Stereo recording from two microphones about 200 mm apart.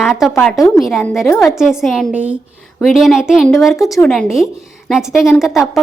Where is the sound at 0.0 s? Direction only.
Centre (ahead or behind).